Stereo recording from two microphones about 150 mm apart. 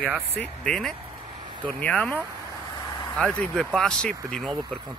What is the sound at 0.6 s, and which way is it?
Speech, 5° left (ahead or behind).